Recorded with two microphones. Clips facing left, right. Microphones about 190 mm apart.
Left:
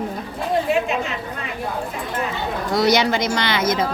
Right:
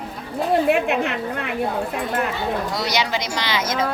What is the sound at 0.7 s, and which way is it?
Speech, 60° right (ahead or behind).